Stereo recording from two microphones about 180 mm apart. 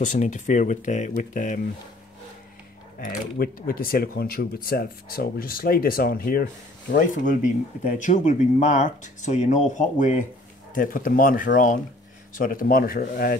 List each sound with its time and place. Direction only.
0.0 s speech: 45° left (ahead or behind)
3.0 s speech: 50° left (ahead or behind)